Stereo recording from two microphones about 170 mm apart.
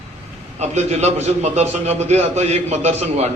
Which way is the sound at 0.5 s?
40° right (ahead or behind).